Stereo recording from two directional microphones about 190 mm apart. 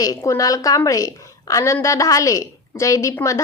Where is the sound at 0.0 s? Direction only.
15° left (ahead or behind).